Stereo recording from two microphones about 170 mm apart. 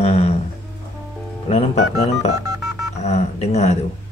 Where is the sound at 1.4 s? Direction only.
40° left (ahead or behind).